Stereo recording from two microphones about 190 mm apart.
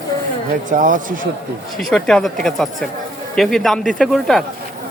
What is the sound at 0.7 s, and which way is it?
Speech, 45° right (ahead or behind).